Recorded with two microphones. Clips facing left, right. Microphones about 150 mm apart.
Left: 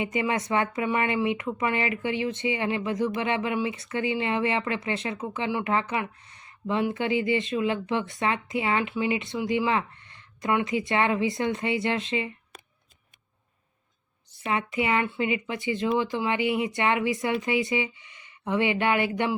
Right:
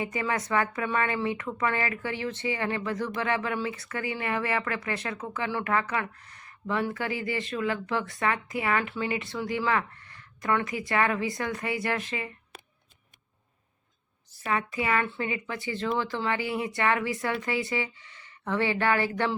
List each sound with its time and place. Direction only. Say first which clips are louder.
0.0 s speech: left 3 dB; 20° left (ahead or behind)
14.4 s speech: left 2 dB; 20° left (ahead or behind)